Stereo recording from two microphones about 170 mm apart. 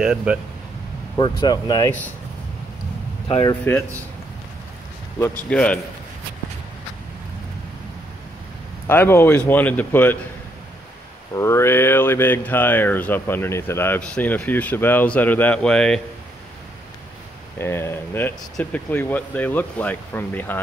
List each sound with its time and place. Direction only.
0.0 s speech: 5° right (ahead or behind)
1.4 s speech: 25° left (ahead or behind)
3.4 s speech: 15° left (ahead or behind)
5.5 s speech: 5° left (ahead or behind)
8.8 s speech: 15° left (ahead or behind)
11.3 s speech: 15° left (ahead or behind)
17.6 s speech: 15° left (ahead or behind)